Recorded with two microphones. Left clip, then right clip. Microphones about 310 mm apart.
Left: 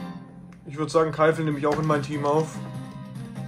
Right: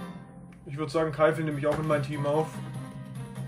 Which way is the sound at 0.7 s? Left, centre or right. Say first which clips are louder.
Left 6 dB; centre.